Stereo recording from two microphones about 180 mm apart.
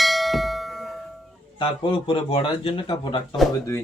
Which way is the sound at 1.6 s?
30° left (ahead or behind).